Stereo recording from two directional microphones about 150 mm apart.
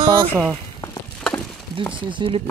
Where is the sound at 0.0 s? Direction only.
35° right (ahead or behind).